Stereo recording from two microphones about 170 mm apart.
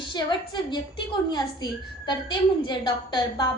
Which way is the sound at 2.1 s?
25° left (ahead or behind).